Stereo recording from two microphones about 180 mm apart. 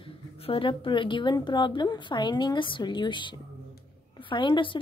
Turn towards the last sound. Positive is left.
turn(degrees=25)  # may be behind; listen again after turning